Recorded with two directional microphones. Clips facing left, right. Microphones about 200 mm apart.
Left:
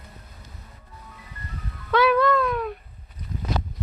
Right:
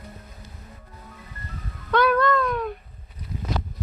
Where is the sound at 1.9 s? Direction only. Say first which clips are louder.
Left 1 dB; 5° left (ahead or behind).